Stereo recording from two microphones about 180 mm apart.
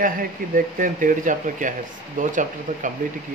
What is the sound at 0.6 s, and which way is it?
Speech, 50° right (ahead or behind).